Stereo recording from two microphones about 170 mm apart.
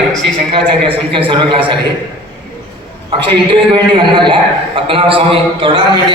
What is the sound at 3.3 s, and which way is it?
A man's voice, 30° right (ahead or behind).